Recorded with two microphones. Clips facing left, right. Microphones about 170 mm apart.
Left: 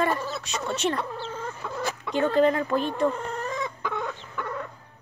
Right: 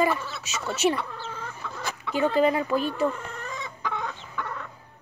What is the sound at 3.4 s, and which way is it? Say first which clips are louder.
Chicken: left 4 dB; 50° left (ahead or behind).